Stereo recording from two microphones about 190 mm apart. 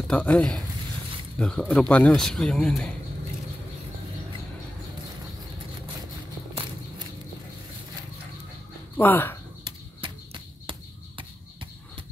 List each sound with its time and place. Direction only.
0.1 s a man's voice: 5° left (ahead or behind)
8.9 s speech: 10° left (ahead or behind)
9.7 s a sound: 25° right (ahead or behind)